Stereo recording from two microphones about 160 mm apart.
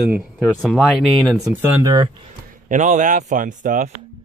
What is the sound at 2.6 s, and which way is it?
Speech, 50° right (ahead or behind).